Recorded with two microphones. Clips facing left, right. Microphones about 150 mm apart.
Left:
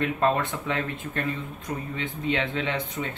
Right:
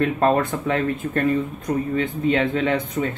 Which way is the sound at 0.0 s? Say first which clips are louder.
Right 5 dB; 50° right (ahead or behind).